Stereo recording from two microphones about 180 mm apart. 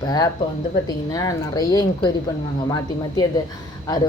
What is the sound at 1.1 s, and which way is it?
Speech, 20° left (ahead or behind).